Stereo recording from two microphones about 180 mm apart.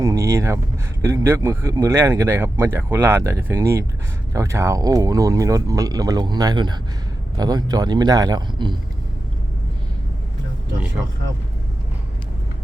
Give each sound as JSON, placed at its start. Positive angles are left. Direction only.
{"t": 0.0, "sound": "speech", "side_deg": -15}